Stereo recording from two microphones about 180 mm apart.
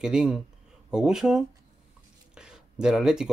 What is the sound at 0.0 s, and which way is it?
Speech, 5° right (ahead or behind).